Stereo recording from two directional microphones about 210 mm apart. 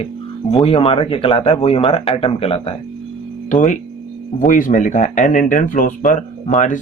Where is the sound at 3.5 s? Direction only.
35° left (ahead or behind).